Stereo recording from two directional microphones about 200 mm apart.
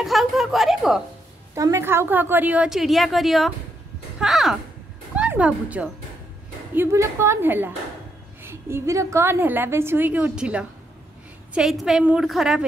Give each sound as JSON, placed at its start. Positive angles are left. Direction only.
{"t": 0.0, "sound": "a woman's voice", "side_deg": 0}
{"t": 1.5, "sound": "a woman's voice", "side_deg": -15}